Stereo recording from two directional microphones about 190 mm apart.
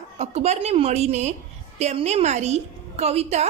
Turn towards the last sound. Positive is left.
turn(degrees=-35)  # may be behind; listen again after turning